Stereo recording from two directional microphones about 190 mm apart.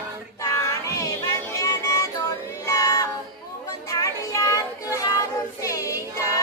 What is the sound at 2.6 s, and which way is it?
Child singing, 15° left (ahead or behind).